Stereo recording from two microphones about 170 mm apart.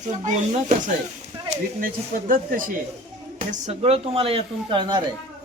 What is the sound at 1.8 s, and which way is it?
Speech, 55° right (ahead or behind).